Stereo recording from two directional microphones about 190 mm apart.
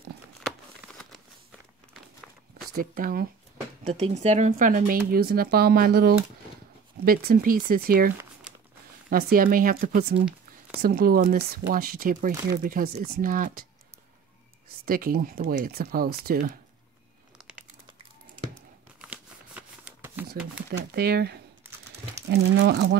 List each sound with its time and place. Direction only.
0.5 s crumpling: centre (ahead or behind)
2.7 s speech: 50° right (ahead or behind)
3.8 s speech: 35° right (ahead or behind)
9.1 s speech: 50° right (ahead or behind)
14.9 s speech: 50° right (ahead or behind)
18.9 s crumpling: 5° right (ahead or behind)
20.5 s speech: 55° right (ahead or behind)